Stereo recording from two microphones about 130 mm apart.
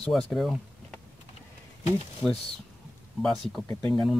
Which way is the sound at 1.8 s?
50° left (ahead or behind).